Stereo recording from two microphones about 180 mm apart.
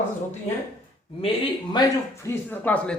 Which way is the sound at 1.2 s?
30° left (ahead or behind).